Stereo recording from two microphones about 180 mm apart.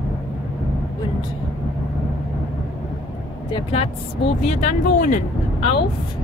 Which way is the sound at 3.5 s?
35° left (ahead or behind).